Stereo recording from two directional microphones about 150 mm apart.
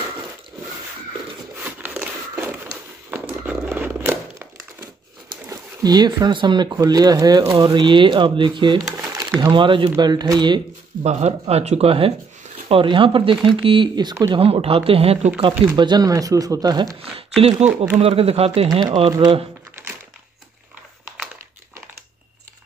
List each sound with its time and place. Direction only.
1.6 s a sound: 10° right (ahead or behind)
5.3 s speech: 25° right (ahead or behind)
11.0 s speech: 45° right (ahead or behind); by 14.3 s 25° right (ahead or behind)
14.3 s speech: 40° right (ahead or behind)
15.7 s speech: 30° right (ahead or behind)
17.4 s speech: 40° right (ahead or behind)
17.6 s speech: 15° right (ahead or behind)
18.0 s speech: 40° right (ahead or behind)
18.7 s speech: 25° right (ahead or behind)